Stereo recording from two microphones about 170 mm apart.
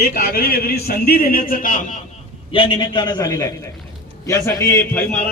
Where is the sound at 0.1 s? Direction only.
65° left (ahead or behind).